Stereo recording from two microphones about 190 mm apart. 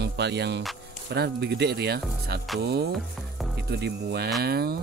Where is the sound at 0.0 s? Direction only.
65° right (ahead or behind).